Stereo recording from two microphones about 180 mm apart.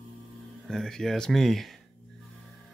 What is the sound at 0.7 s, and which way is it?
Speech, 5° left (ahead or behind).